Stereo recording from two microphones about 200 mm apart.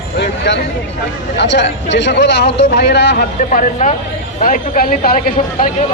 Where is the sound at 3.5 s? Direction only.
40° left (ahead or behind).